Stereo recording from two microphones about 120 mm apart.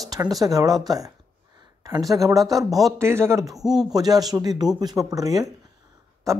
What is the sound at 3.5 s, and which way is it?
Speech, 5° right (ahead or behind).